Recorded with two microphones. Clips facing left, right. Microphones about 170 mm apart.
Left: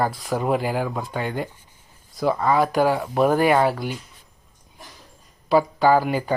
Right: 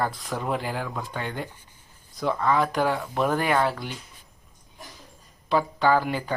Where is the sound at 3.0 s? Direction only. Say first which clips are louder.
Left 6 dB; 35° left (ahead or behind).